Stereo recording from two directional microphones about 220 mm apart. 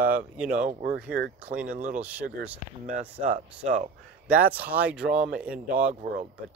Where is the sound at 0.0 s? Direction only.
40° right (ahead or behind).